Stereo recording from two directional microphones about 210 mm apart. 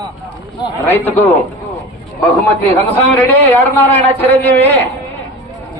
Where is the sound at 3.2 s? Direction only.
10° left (ahead or behind).